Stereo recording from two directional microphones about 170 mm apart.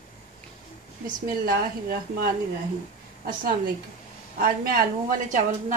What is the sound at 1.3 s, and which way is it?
A woman's voice, 60° right (ahead or behind).